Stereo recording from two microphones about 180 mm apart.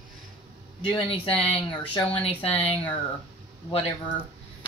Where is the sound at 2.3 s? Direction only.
10° left (ahead or behind).